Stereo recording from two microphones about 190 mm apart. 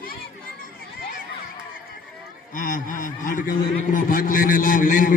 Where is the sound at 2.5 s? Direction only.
45° left (ahead or behind).